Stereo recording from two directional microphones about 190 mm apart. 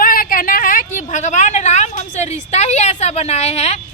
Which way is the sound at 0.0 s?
50° left (ahead or behind).